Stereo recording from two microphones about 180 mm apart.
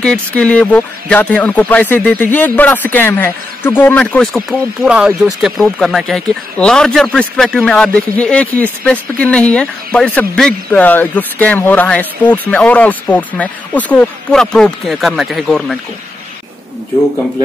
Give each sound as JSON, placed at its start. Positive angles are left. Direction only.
{"t": 0.0, "sound": "speech", "side_deg": 5}